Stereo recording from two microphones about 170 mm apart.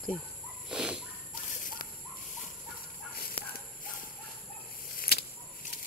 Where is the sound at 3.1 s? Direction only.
60° left (ahead or behind).